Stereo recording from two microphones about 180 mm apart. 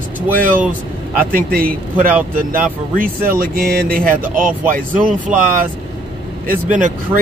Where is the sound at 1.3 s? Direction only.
55° right (ahead or behind).